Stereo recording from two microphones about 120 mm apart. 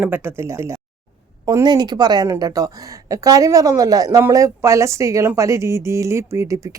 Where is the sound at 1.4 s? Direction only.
35° right (ahead or behind).